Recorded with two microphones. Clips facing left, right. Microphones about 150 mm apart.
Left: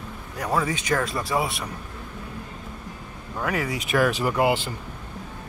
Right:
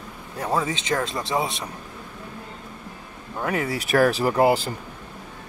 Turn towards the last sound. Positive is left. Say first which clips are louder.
# right 3 dB
turn(degrees=-35)  # may be behind; listen again after turning